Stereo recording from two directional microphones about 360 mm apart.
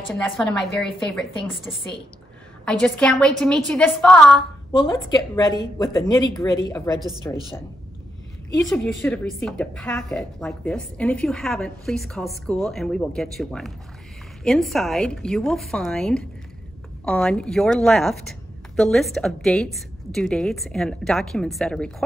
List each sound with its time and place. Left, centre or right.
0.1 s a woman's voice: centre
2.6 s a woman's voice: centre
8.5 s a woman's voice: centre